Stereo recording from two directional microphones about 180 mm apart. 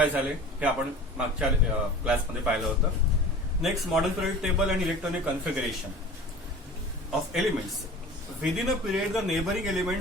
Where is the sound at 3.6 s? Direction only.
5° right (ahead or behind).